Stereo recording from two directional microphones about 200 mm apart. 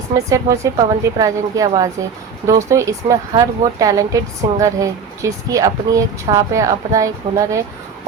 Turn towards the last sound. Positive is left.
turn(degrees=-15)  # may be behind; listen again after turning